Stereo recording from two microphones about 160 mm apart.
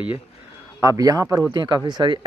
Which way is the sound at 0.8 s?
20° right (ahead or behind).